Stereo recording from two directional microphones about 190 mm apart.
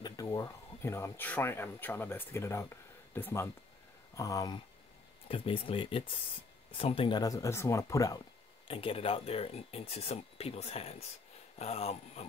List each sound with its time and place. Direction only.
0.0 s speech: 20° left (ahead or behind)
5.3 s speech: 30° left (ahead or behind)
8.6 s speech: 30° left (ahead or behind)